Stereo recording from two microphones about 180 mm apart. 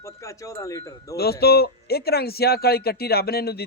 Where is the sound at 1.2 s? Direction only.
60° left (ahead or behind).